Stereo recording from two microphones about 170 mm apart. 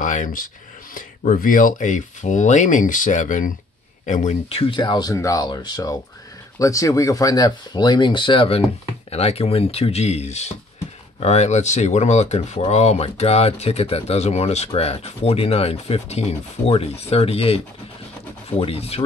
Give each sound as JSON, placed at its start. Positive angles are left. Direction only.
{"t": 0.0, "sound": "speech", "side_deg": 50}